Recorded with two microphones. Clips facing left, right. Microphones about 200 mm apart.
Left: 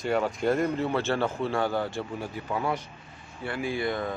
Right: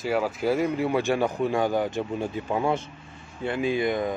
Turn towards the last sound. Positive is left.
turn(degrees=-15)  # may be behind; listen again after turning